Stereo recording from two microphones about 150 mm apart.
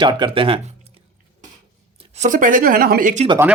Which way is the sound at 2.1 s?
55° right (ahead or behind).